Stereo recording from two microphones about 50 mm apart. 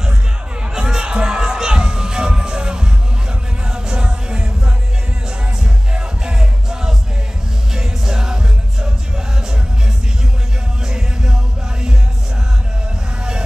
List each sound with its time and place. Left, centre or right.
0.7 s music: centre
5.6 s music: centre
10.9 s music: centre